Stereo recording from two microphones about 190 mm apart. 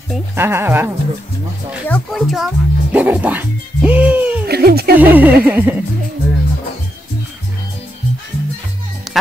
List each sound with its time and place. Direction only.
0.4 s music: 10° right (ahead or behind)
1.9 s speech: centre (ahead or behind)
4.5 s a sound: 55° right (ahead or behind)
4.9 s music: 10° right (ahead or behind)
9.1 s music: centre (ahead or behind)